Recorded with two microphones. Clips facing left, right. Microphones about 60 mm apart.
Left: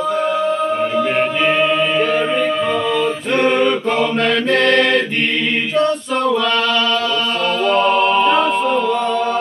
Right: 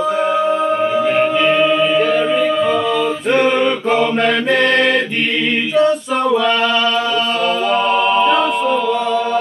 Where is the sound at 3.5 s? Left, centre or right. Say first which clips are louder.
Right 1 dB; centre.